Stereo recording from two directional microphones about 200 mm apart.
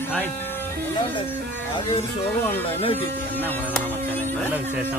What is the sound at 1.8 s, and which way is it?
Speech, 25° left (ahead or behind).